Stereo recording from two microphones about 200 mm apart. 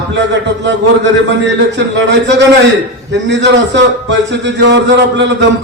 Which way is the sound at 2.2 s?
60° right (ahead or behind).